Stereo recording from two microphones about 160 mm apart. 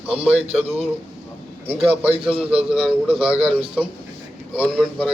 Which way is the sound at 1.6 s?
40° right (ahead or behind).